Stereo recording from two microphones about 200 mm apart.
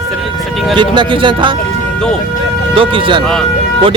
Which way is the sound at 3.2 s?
5° left (ahead or behind).